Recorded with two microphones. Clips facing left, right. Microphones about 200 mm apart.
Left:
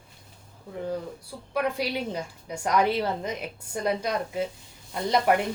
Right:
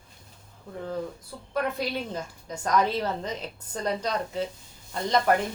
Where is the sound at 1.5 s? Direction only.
10° left (ahead or behind).